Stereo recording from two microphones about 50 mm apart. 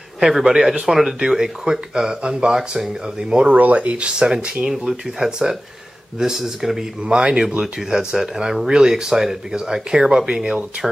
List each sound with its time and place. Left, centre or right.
0.2 s speech: centre
3.5 s speech: right
4.6 s speech: centre